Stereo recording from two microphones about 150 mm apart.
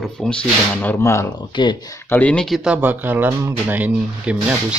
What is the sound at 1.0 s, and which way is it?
Speech, 15° left (ahead or behind).